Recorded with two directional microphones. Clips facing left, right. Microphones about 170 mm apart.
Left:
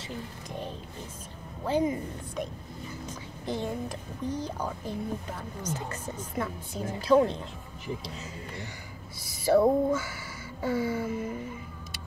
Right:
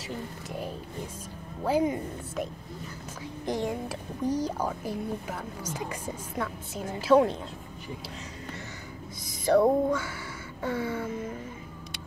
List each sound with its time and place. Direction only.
0.0 s a woman's voice: 10° right (ahead or behind)
3.4 s a woman's voice: 15° right (ahead or behind)
9.2 s a sound: 10° left (ahead or behind)
10.6 s a woman's voice: centre (ahead or behind)